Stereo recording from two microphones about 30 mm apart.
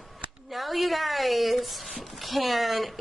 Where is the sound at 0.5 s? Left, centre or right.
Centre.